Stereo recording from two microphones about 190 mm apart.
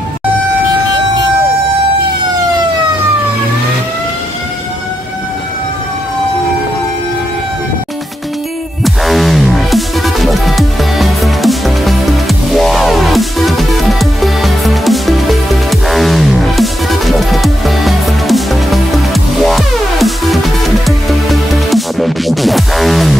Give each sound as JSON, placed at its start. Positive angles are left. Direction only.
{"t": 8.8, "sound": "music", "side_deg": 0}